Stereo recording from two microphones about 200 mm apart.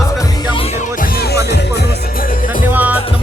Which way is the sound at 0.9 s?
45° left (ahead or behind).